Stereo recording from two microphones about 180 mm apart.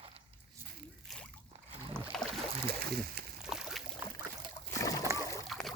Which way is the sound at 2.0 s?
5° left (ahead or behind).